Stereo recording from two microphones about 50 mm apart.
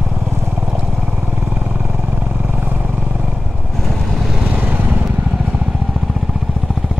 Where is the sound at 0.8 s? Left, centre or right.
Right.